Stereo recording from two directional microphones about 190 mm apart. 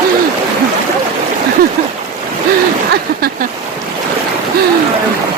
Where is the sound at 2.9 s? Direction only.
55° right (ahead or behind).